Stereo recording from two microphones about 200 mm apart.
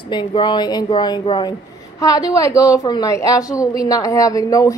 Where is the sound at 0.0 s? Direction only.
25° left (ahead or behind).